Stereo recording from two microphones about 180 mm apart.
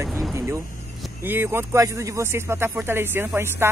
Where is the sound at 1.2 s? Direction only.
10° right (ahead or behind).